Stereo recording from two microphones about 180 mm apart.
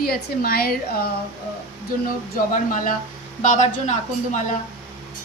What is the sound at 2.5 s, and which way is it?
A woman's voice, 50° left (ahead or behind).